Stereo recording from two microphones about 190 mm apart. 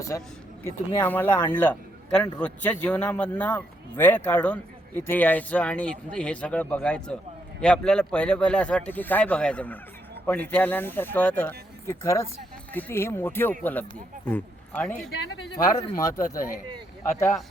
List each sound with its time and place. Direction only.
1.0 s speech: 10° left (ahead or behind)
15.5 s speech: 20° left (ahead or behind)